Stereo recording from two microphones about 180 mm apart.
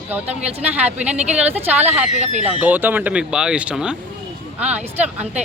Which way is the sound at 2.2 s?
40° right (ahead or behind).